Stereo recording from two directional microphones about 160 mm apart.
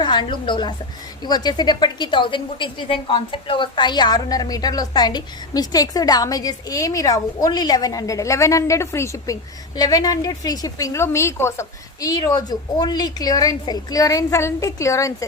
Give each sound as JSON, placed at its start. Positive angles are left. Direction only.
{"t": 0.0, "sound": "a woman's voice", "side_deg": 30}